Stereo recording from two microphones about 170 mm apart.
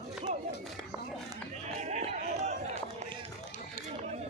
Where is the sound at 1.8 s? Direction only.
40° right (ahead or behind).